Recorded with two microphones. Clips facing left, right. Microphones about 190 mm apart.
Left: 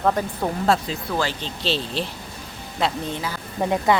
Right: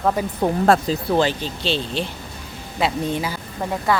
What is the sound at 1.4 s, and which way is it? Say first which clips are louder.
Speech: right 2 dB; centre (ahead or behind).